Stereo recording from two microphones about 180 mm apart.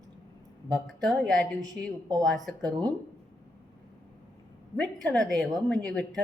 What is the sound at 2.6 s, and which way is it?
Speech, 20° right (ahead or behind).